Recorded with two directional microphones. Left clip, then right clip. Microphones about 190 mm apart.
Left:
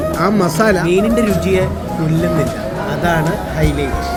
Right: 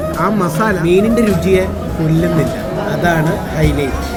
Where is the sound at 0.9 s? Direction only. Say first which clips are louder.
Right 2 dB; 5° left (ahead or behind).